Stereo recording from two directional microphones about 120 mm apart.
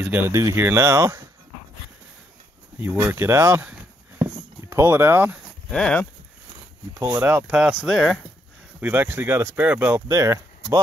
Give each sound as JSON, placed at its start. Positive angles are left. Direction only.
{"t": 0.0, "sound": "speech", "side_deg": -15}
{"t": 0.3, "sound": "speech", "side_deg": -25}
{"t": 2.8, "sound": "speech", "side_deg": -20}
{"t": 4.2, "sound": "a sound", "side_deg": -20}
{"t": 5.7, "sound": "speech", "side_deg": 5}
{"t": 7.0, "sound": "speech", "side_deg": -30}
{"t": 7.2, "sound": "speech", "side_deg": -10}
{"t": 8.8, "sound": "speech", "side_deg": -15}
{"t": 10.0, "sound": "speech", "side_deg": -25}